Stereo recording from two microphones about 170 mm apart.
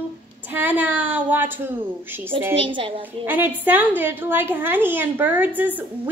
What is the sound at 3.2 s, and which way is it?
A woman's voice, 10° right (ahead or behind).